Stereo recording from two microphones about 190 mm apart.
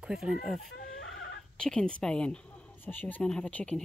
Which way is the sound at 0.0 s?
5° right (ahead or behind).